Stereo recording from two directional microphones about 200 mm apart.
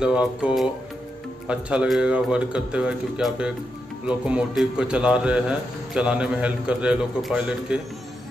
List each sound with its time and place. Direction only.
0.0 s a man's voice: 5° right (ahead or behind)